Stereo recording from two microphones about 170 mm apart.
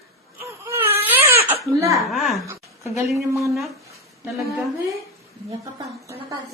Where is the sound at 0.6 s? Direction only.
15° right (ahead or behind).